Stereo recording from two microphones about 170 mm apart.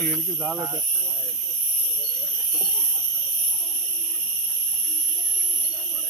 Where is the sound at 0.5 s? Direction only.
20° right (ahead or behind).